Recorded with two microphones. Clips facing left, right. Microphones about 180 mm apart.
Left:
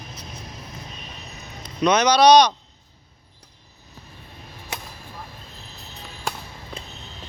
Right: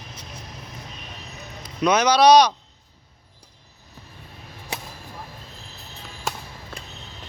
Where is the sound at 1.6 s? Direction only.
5° right (ahead or behind).